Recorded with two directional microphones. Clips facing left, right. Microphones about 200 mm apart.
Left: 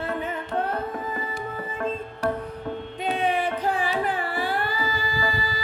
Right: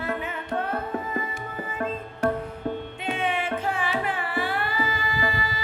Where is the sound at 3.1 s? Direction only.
35° left (ahead or behind).